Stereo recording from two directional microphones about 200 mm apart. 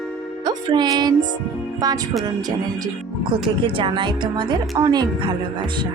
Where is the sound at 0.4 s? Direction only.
20° right (ahead or behind).